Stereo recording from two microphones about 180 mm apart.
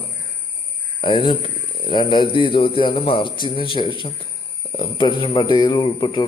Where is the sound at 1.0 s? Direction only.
25° left (ahead or behind).